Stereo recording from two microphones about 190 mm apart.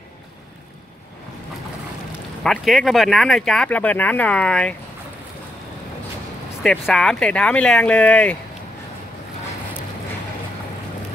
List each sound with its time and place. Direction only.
2.4 s speech: centre (ahead or behind)
6.6 s speech: centre (ahead or behind)